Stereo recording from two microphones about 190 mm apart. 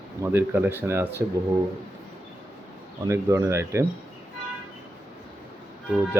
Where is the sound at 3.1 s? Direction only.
15° right (ahead or behind).